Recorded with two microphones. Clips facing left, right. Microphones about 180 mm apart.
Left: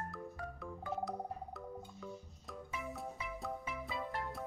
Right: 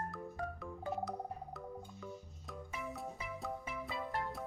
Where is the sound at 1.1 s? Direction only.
Centre (ahead or behind).